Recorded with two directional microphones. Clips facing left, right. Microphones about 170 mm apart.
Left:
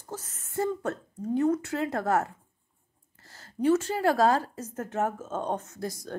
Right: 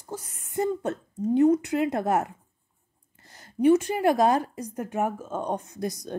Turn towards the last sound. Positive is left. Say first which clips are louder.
# right 4 dB
turn(degrees=-20)  # may be behind; listen again after turning